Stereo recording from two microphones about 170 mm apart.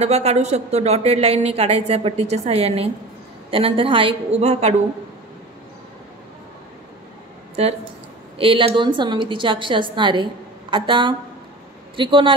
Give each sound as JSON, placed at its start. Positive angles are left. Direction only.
{"t": 0.0, "sound": "a woman's voice", "side_deg": -40}
{"t": 7.6, "sound": "a woman's voice", "side_deg": -35}